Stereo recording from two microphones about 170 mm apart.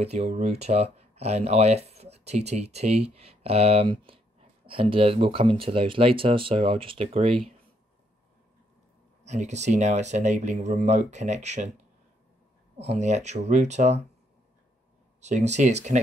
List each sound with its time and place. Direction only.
0.0 s speech: 40° right (ahead or behind)
9.2 s speech: 45° right (ahead or behind)
12.8 s speech: 40° right (ahead or behind)
15.1 s speech: 40° right (ahead or behind)